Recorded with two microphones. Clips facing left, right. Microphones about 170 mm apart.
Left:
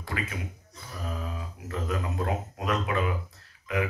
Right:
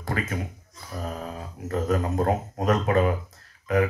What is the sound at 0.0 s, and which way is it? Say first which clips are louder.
Speech: right 5 dB; 45° right (ahead or behind).